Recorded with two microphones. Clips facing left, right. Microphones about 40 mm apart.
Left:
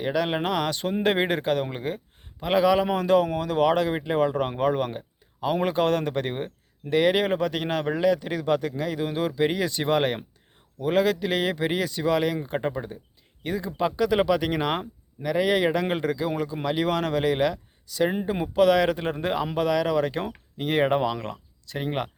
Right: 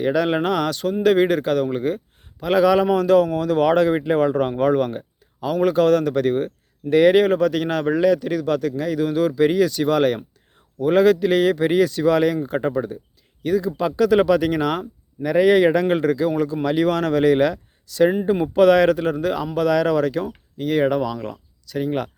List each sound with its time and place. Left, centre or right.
0.0 s speech: centre
6.9 s speech: centre
10.8 s speech: centre
13.4 s speech: centre
15.2 s speech: centre
18.9 s speech: centre
20.2 s speech: left